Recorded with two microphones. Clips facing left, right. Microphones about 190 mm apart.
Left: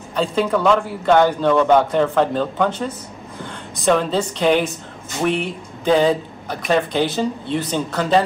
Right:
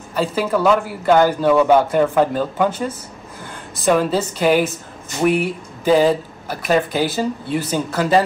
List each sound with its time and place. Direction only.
0.1 s a man's voice: 5° right (ahead or behind)